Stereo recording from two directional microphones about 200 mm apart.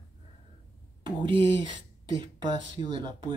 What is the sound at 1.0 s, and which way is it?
Speech, 25° right (ahead or behind).